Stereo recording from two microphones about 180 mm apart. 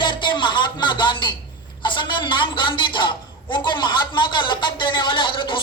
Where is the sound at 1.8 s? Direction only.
25° left (ahead or behind).